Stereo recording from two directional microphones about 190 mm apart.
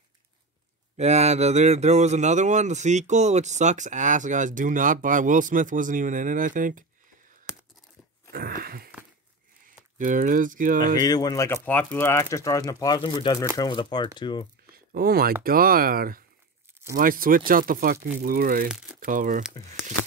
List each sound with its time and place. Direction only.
0.9 s speech: 35° right (ahead or behind)
7.5 s a sound: 5° right (ahead or behind)
8.3 s wheeze: 50° right (ahead or behind)
9.9 s speech: 45° right (ahead or behind)
11.0 s speech: 20° left (ahead or behind)
14.9 s speech: 50° right (ahead or behind)
18.7 s speech: 5° right (ahead or behind)
19.0 s speech: 45° right (ahead or behind)